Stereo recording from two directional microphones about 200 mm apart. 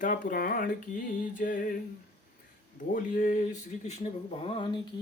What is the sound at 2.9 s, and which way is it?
Speech, 40° left (ahead or behind).